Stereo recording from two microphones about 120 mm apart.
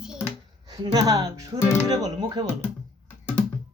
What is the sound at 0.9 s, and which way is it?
Speech, 30° right (ahead or behind).